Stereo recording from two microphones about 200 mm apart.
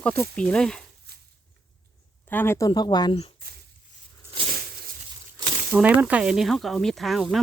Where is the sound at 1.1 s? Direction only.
55° right (ahead or behind).